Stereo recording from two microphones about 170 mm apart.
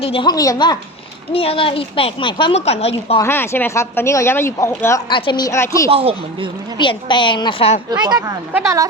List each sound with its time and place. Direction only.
0.0 s a woman's voice: 30° left (ahead or behind)
1.3 s speech: 35° left (ahead or behind)
3.2 s speech: 15° left (ahead or behind)
5.9 s speech: 35° right (ahead or behind)
6.7 s a woman's voice: 30° left (ahead or behind)
8.0 s a woman's voice: 25° right (ahead or behind)